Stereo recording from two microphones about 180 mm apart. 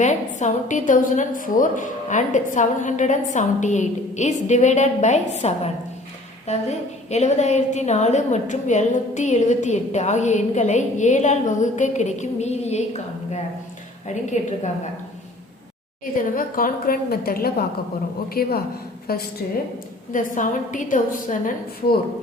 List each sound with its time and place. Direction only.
0.3 s a woman's voice: 45° left (ahead or behind)
16.1 s a woman's voice: 50° left (ahead or behind)
20.1 s a woman's voice: 45° left (ahead or behind)